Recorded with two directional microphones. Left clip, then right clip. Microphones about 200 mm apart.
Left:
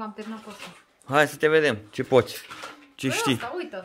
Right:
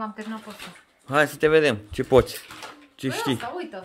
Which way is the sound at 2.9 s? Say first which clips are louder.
Left 2 dB; 10° left (ahead or behind).